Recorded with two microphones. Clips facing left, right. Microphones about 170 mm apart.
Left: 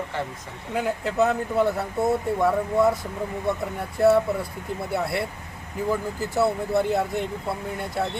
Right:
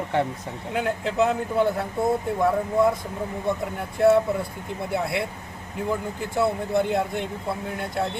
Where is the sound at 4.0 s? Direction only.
Centre (ahead or behind).